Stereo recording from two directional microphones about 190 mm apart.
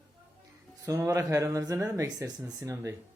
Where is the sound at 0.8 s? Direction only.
15° right (ahead or behind).